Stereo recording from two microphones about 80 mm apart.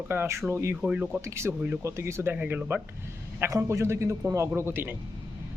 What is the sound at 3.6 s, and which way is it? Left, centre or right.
Speech, right.